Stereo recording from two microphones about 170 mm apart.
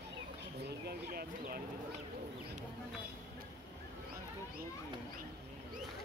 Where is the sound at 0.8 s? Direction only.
60° right (ahead or behind).